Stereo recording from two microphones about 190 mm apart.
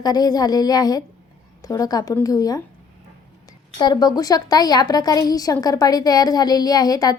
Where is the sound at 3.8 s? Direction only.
20° left (ahead or behind).